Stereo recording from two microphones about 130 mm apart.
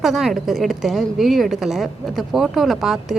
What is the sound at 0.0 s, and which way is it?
A woman's voice, centre (ahead or behind).